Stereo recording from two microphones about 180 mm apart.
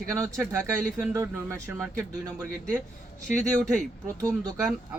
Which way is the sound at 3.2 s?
5° left (ahead or behind).